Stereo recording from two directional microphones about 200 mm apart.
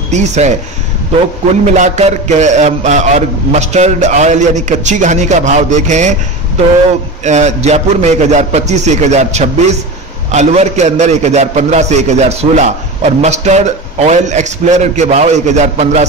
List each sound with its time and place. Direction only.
0.1 s a man's voice: 35° right (ahead or behind)
1.7 s a man's voice: 35° right (ahead or behind)
7.2 s a man's voice: 35° right (ahead or behind)